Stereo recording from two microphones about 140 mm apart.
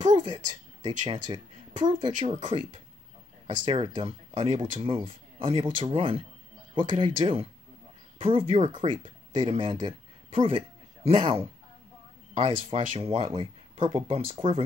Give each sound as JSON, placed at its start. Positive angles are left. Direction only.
{"t": 0.1, "sound": "speech", "side_deg": -30}